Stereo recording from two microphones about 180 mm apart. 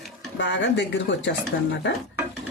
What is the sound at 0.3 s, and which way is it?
Speech, 80° left.